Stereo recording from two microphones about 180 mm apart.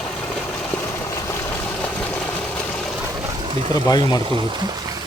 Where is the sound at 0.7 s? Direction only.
10° left (ahead or behind).